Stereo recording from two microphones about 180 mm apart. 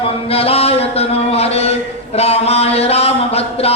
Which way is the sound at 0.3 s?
35° left (ahead or behind).